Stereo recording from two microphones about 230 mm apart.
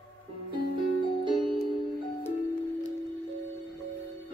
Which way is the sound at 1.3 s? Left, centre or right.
Centre.